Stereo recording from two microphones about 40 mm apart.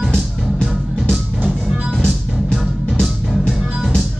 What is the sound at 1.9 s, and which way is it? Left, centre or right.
Music, centre.